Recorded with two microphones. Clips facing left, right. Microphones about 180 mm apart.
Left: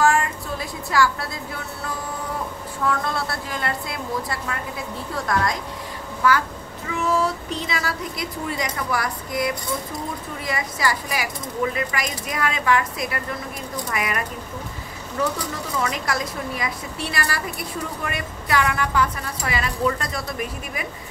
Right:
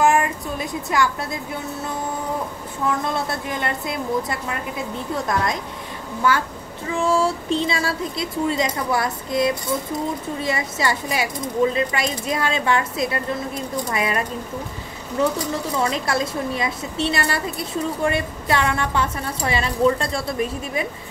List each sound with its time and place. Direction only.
0.0 s a sound: 20° right (ahead or behind)
2.8 s a woman's voice: 20° right (ahead or behind)
6.9 s a woman's voice: 30° right (ahead or behind)
15.8 s a woman's voice: 30° right (ahead or behind)